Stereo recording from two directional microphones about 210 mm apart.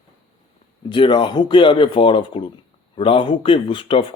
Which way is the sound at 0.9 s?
25° left (ahead or behind).